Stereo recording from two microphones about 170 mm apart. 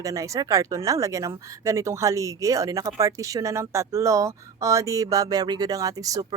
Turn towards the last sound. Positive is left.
turn(degrees=-20)  # may be behind; listen again after turning